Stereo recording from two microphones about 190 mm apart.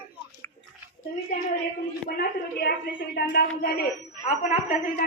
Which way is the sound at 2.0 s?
50° left (ahead or behind).